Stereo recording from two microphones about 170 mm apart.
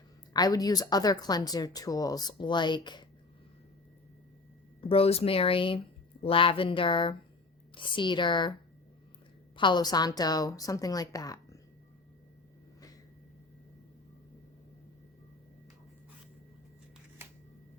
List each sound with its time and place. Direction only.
0.3 s speech: 20° left (ahead or behind)
4.8 s speech: 35° left (ahead or behind)
9.6 s speech: 25° left (ahead or behind)